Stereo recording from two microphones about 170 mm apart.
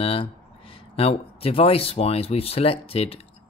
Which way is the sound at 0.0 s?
35° left (ahead or behind).